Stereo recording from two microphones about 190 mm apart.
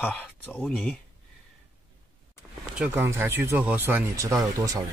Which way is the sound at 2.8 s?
10° right (ahead or behind).